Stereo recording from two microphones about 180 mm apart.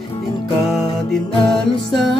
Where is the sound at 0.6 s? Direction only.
Centre (ahead or behind).